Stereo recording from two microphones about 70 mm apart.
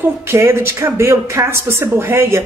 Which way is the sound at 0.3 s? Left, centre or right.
Right.